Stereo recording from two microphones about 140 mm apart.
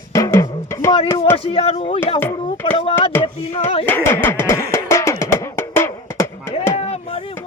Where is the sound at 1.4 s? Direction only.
40° left (ahead or behind).